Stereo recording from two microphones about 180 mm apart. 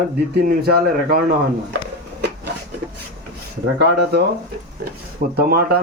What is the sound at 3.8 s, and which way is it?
Speech, 65° right (ahead or behind).